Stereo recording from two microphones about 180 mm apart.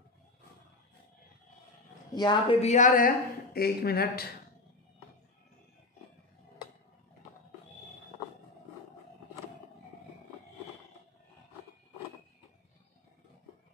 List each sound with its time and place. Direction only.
2.1 s a woman's voice: 25° left (ahead or behind)
2.7 s speech: 45° left (ahead or behind)